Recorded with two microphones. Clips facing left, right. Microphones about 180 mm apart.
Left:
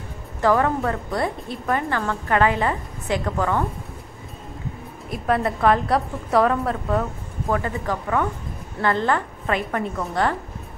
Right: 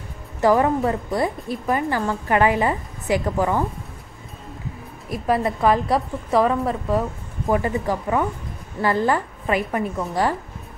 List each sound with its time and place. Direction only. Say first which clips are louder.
0.4 s speech: right 2 dB; 15° right (ahead or behind)
1.2 s a woman's voice: right 2 dB; 5° right (ahead or behind)
5.1 s a woman's voice: right 1 dB; centre (ahead or behind)
7.4 s a woman's voice: right 3 dB; 15° right (ahead or behind)